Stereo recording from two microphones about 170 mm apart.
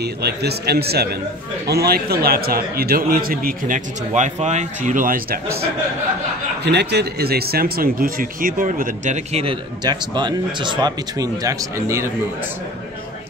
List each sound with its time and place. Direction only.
0.0 s a man's voice: 70° right (ahead or behind); by 5.4 s 55° right (ahead or behind)
6.6 s speech: 80° right; by 12.1 s 15° right (ahead or behind)